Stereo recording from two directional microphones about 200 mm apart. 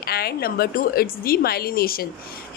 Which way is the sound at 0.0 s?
50° left (ahead or behind).